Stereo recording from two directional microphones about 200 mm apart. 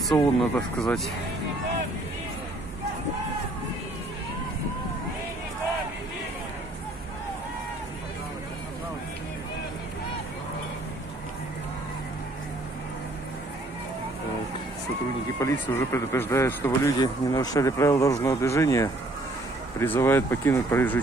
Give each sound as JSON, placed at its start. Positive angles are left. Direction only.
{"t": 0.1, "sound": "speech", "side_deg": 0}
{"t": 15.3, "sound": "speech", "side_deg": 15}